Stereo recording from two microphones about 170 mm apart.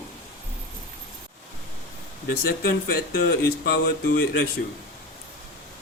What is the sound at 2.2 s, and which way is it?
Speech, 65° left (ahead or behind).